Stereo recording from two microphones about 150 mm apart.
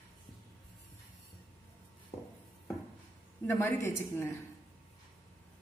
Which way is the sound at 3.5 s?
15° left (ahead or behind).